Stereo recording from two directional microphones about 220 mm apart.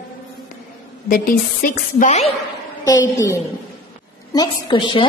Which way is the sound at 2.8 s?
15° left (ahead or behind).